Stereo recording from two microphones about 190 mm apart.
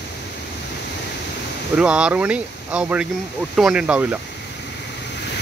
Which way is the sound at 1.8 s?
5° right (ahead or behind).